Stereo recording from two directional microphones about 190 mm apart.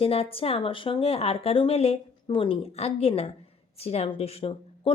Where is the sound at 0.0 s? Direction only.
30° left (ahead or behind).